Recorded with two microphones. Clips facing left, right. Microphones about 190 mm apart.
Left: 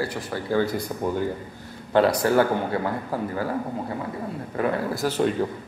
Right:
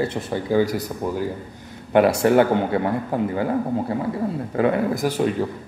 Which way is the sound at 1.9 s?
20° right (ahead or behind).